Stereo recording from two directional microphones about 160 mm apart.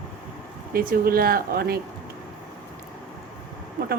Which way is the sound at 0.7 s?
65° right (ahead or behind).